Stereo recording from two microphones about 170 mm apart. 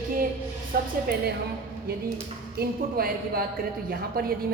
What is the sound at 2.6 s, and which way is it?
A woman's voice, 60° right (ahead or behind).